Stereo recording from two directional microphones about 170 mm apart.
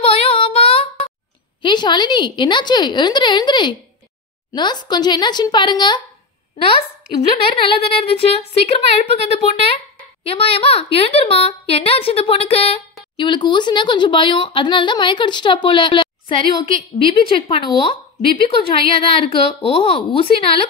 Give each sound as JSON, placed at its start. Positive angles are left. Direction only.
{"t": 0.0, "sound": "child singing", "side_deg": 35}
{"t": 1.6, "sound": "speech", "side_deg": 25}
{"t": 7.4, "sound": "a woman's voice", "side_deg": 30}